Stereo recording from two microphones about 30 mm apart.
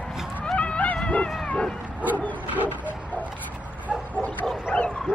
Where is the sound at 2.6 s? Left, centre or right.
Right.